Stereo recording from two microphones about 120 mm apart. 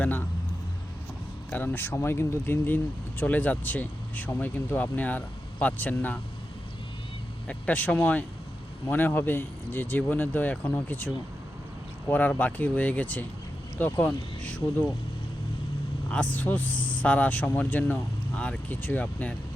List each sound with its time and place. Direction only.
0.0 s speech: 15° left (ahead or behind)
1.5 s speech: 15° left (ahead or behind)
7.4 s speech: 10° left (ahead or behind)
16.3 s speech: 15° left (ahead or behind)